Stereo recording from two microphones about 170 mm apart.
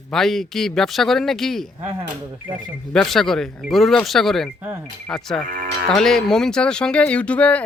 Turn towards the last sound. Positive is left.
turn(degrees=10)  # may be behind; listen again after turning